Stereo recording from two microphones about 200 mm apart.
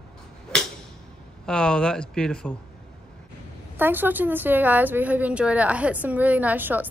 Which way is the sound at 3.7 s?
10° right (ahead or behind).